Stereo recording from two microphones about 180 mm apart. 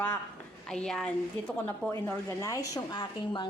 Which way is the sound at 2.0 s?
15° left (ahead or behind).